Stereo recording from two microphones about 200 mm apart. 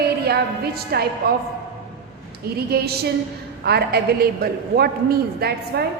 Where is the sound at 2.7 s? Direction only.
50° right (ahead or behind).